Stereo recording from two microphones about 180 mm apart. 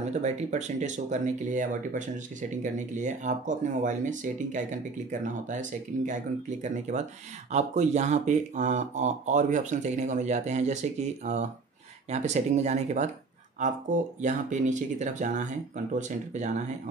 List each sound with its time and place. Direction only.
0.2 s speech: 40° right (ahead or behind)
14.2 s speech: 45° right (ahead or behind)